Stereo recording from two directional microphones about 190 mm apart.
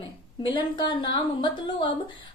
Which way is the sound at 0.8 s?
25° left (ahead or behind).